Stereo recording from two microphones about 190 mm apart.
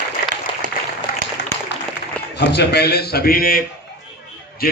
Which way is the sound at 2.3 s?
60° left (ahead or behind).